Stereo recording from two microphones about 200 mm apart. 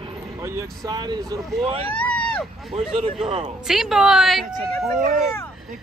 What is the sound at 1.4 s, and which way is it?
A woman's voice, centre (ahead or behind).